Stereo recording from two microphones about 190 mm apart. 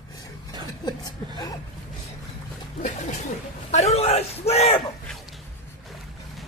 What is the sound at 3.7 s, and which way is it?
Bellow, 35° left (ahead or behind).